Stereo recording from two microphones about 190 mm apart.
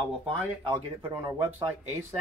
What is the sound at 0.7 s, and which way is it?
Speech, 10° right (ahead or behind).